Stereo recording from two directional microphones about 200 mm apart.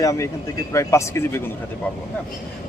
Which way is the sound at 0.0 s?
15° left (ahead or behind).